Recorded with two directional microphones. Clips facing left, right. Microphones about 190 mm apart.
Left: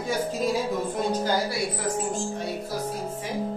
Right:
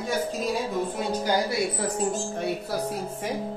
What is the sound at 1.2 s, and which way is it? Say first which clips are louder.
Speech: right 1 dB; 15° right (ahead or behind).